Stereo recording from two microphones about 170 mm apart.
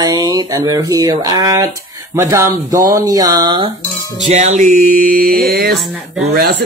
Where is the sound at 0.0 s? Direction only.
25° right (ahead or behind).